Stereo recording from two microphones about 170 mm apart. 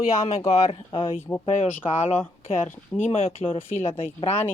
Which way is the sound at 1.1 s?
15° left (ahead or behind).